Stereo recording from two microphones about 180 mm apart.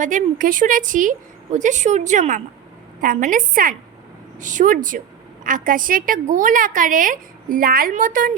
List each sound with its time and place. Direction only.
0.0 s a woman's voice: 45° right (ahead or behind)